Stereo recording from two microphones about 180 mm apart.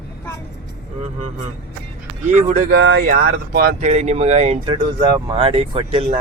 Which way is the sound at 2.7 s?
60° right (ahead or behind).